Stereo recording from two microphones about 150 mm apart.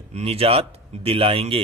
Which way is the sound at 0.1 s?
40° right (ahead or behind).